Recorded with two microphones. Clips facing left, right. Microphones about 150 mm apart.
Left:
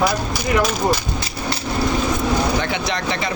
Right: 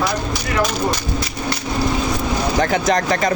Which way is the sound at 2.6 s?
45° right (ahead or behind).